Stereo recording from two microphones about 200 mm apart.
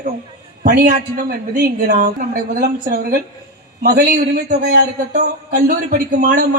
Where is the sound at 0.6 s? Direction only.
45° right (ahead or behind).